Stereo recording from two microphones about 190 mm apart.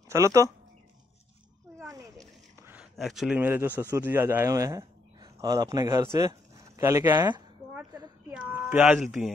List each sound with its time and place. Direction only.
0.1 s speech: 15° right (ahead or behind)
1.8 s a sound: 15° right (ahead or behind)
2.6 s a man's voice: 5° right (ahead or behind)